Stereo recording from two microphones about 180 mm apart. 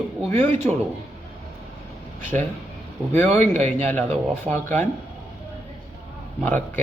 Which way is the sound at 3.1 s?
10° left (ahead or behind).